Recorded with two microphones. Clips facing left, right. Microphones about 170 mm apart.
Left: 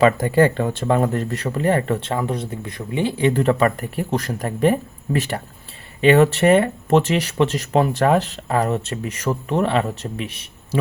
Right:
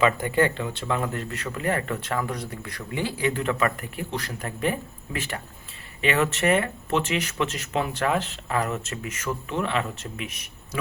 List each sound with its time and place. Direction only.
0.0 s speech: 35° left (ahead or behind)